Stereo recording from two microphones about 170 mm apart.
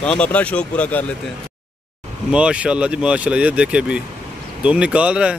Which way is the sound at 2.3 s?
5° right (ahead or behind).